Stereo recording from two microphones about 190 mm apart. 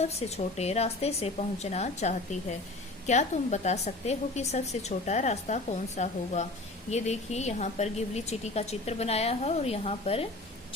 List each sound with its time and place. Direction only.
0.0 s a woman's voice: 35° left (ahead or behind)